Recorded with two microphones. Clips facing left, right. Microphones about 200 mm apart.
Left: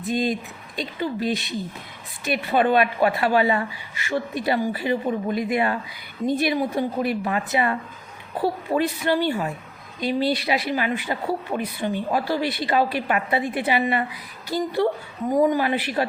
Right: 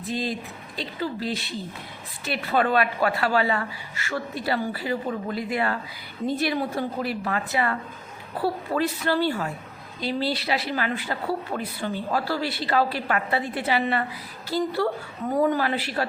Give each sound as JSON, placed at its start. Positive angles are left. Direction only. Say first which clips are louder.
{"t": 0.1, "sound": "a man's voice", "louder": "left 5 dB", "side_deg": 20}